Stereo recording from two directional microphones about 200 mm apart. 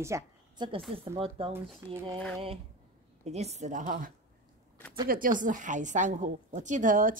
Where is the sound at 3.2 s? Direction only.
35° right (ahead or behind).